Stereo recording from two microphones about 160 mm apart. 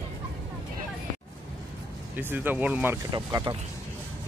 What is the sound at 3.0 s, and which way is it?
Speech, 25° right (ahead or behind).